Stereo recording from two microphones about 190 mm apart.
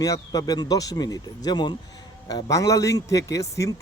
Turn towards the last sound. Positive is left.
turn(degrees=15)  # may be behind; listen again after turning